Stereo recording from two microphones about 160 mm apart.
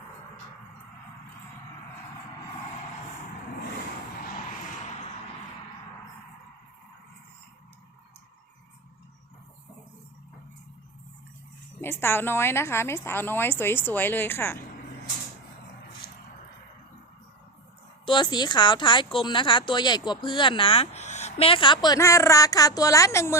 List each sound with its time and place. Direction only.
11.8 s a woman's voice: 15° left (ahead or behind)
18.0 s a woman's voice: 30° left (ahead or behind)